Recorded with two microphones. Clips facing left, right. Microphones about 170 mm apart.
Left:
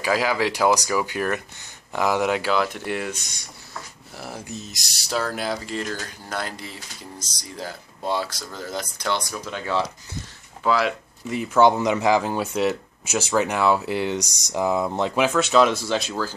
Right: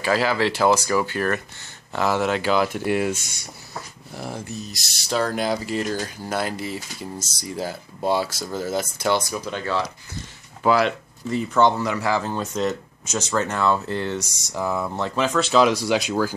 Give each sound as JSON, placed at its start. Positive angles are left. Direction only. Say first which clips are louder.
{"t": 0.0, "sound": "speech", "louder": "right 1 dB", "side_deg": 10}
{"t": 2.4, "sound": "speech", "louder": "right 2 dB", "side_deg": -5}
{"t": 4.2, "sound": "speech", "louder": "right 3 dB", "side_deg": 5}
{"t": 4.5, "sound": "speech", "louder": "right 2 dB", "side_deg": 20}
{"t": 4.9, "sound": "speech", "louder": "right 3 dB", "side_deg": 10}
{"t": 10.6, "sound": "speech", "louder": "right 3 dB", "side_deg": 0}
{"t": 11.7, "sound": "speech", "louder": "left 3 dB", "side_deg": 20}
{"t": 15.8, "sound": "speech", "louder": "right 4 dB", "side_deg": -10}